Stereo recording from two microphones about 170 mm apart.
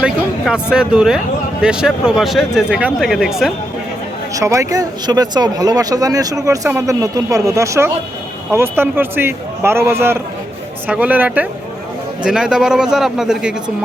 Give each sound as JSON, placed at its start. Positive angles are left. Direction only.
{"t": 0.0, "sound": "speech", "side_deg": -5}
{"t": 4.4, "sound": "a man's voice", "side_deg": -20}